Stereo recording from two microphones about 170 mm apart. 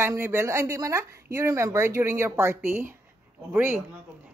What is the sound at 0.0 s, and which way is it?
Speech, 15° right (ahead or behind).